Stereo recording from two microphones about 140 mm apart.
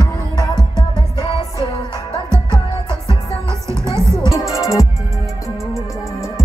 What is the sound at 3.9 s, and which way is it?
Music, 20° right (ahead or behind).